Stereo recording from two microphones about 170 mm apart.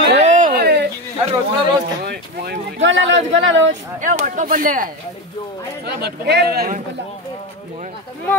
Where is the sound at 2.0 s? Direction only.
70° right (ahead or behind).